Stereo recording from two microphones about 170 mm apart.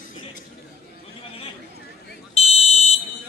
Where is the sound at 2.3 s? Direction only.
40° left (ahead or behind).